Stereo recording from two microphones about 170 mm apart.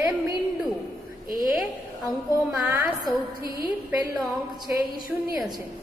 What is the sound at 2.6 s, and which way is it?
Speech, 10° right (ahead or behind).